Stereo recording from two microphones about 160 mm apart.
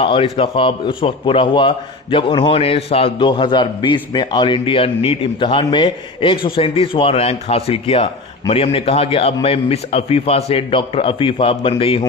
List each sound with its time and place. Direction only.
0.0 s a man's voice: 35° left (ahead or behind)